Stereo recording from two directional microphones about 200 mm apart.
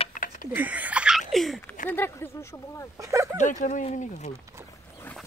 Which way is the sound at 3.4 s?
40° left (ahead or behind).